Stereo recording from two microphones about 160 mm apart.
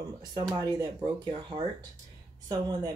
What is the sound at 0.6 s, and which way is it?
Speech, 25° right (ahead or behind).